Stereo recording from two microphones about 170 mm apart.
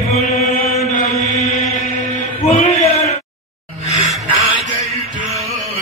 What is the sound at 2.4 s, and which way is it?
Chant, 40° left (ahead or behind).